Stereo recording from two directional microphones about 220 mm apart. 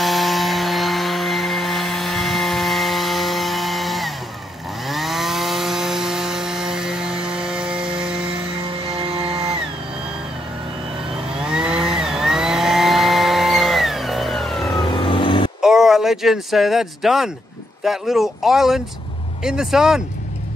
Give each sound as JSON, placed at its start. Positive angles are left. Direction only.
{"t": 0.0, "sound": "a sound", "side_deg": 0}
{"t": 4.8, "sound": "chainsaw", "side_deg": 0}
{"t": 8.8, "sound": "vehicle", "side_deg": -25}
{"t": 11.3, "sound": "chainsaw", "side_deg": -5}
{"t": 15.0, "sound": "vehicle", "side_deg": 25}
{"t": 15.6, "sound": "speech", "side_deg": 0}